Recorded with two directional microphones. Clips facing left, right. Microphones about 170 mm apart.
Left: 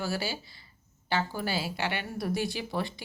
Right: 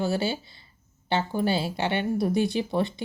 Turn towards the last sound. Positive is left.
turn(degrees=-25)  # may be behind; listen again after turning